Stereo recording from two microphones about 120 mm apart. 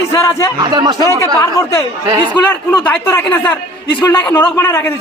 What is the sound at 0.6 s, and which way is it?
Speech, 35° right (ahead or behind).